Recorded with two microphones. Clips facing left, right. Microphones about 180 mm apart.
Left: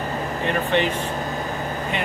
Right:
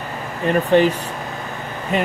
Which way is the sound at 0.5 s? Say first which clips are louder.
Right 7 dB; 40° right (ahead or behind).